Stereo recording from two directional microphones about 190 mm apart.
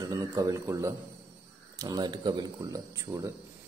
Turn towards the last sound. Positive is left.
turn(degrees=-15)  # may be behind; listen again after turning